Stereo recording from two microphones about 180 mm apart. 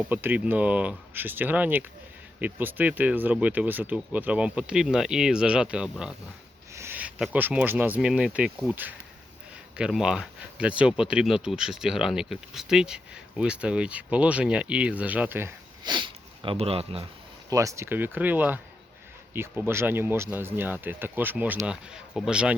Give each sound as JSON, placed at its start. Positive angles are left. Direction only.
{"t": 0.1, "sound": "speech", "side_deg": -10}
{"t": 15.8, "sound": "speech", "side_deg": -25}
{"t": 17.5, "sound": "speech", "side_deg": -15}